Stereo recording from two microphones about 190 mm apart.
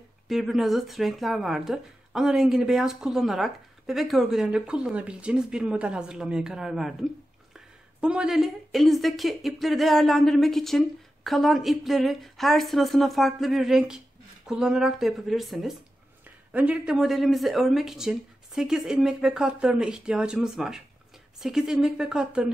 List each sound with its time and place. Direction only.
0.3 s speech: centre (ahead or behind)